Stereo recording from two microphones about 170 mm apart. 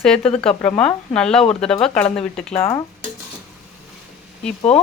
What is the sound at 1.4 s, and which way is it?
Speech, 35° left (ahead or behind).